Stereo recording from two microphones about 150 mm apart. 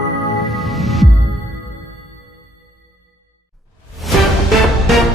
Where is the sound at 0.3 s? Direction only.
Centre (ahead or behind).